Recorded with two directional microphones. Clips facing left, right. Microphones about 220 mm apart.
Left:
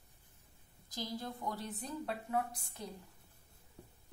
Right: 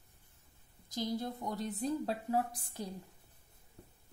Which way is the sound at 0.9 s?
20° right (ahead or behind).